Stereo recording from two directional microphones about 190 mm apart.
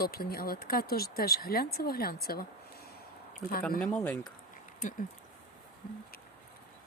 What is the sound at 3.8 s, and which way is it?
Speech, 5° left (ahead or behind).